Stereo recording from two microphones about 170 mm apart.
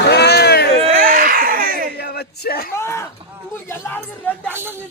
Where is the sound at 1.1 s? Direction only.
55° right (ahead or behind).